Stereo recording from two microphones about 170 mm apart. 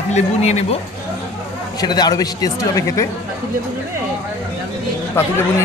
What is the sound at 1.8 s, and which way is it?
A man's voice, 25° left (ahead or behind).